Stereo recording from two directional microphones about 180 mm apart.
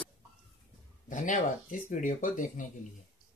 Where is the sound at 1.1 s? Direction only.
45° left (ahead or behind).